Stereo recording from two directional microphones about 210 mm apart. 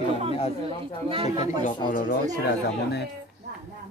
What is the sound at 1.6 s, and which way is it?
Speech, 40° left (ahead or behind).